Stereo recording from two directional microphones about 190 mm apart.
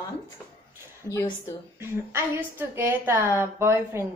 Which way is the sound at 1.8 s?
10° right (ahead or behind).